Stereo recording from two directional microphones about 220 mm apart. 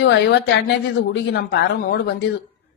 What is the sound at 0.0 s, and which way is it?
Speech, 55° left (ahead or behind).